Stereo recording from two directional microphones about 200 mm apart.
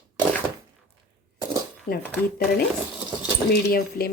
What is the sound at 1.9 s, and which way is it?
Speech, 45° left (ahead or behind).